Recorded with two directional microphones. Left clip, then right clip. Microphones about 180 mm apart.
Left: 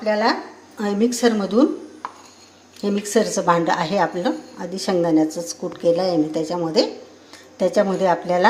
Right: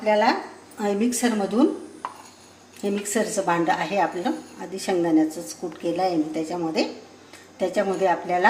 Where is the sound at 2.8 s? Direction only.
30° left (ahead or behind).